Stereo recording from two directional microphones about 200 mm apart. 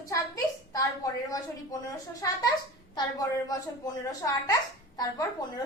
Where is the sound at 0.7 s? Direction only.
15° left (ahead or behind).